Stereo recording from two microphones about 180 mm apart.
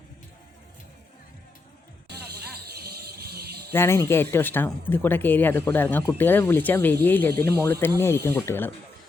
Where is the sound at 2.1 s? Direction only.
60° right (ahead or behind).